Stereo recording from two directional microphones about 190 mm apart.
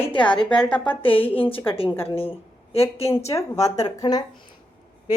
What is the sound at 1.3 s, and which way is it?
A woman's voice, 30° left (ahead or behind).